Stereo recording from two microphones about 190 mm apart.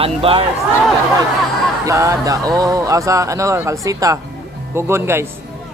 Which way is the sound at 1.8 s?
15° right (ahead or behind).